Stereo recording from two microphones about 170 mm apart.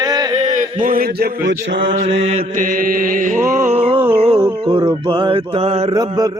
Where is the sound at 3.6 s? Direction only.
35° right (ahead or behind).